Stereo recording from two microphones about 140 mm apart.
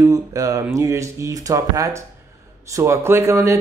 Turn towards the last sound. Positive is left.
turn(degrees=-20)  # may be behind; listen again after turning